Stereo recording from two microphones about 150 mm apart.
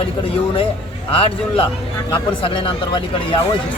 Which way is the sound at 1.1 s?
40° left (ahead or behind).